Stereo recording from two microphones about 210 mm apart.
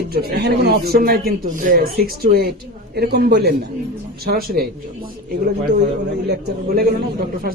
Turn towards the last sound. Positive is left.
turn(degrees=-45)  # may be behind; listen again after turning